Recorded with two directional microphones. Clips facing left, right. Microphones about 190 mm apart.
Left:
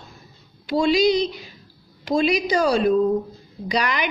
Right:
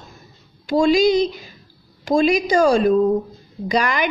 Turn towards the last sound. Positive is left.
turn(degrees=-45)  # may be behind; listen again after turning